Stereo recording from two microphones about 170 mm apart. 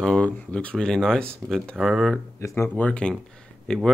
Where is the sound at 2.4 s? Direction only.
15° left (ahead or behind).